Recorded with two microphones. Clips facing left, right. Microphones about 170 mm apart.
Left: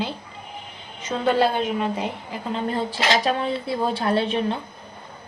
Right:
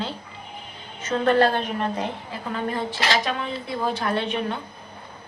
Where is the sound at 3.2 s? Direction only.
35° left (ahead or behind).